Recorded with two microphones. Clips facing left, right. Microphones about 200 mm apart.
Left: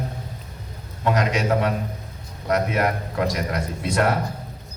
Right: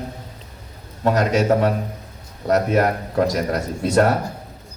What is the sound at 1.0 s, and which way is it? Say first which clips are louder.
A man's voice: right 4 dB; 40° right (ahead or behind).